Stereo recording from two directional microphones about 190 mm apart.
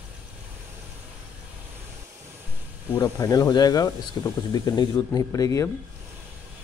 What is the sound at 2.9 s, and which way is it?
Speech, 20° left (ahead or behind).